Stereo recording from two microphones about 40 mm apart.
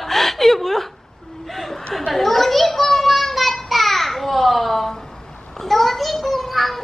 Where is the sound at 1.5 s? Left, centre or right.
Centre.